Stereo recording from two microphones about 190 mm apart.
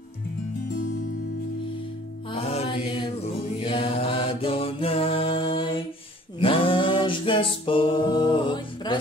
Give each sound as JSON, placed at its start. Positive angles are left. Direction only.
{"t": 2.3, "sound": "mantra", "side_deg": 30}
{"t": 6.4, "sound": "a capella", "side_deg": 30}